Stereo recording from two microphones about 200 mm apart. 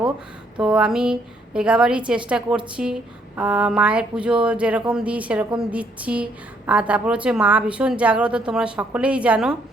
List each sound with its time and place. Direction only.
0.5 s a woman's voice: 5° right (ahead or behind)